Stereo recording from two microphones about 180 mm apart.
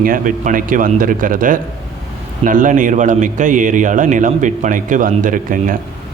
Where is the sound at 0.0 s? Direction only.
50° right (ahead or behind).